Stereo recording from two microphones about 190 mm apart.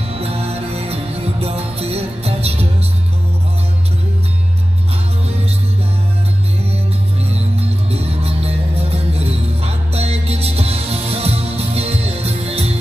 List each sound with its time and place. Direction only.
0.1 s music: 30° right (ahead or behind)
7.9 s music: 30° right (ahead or behind)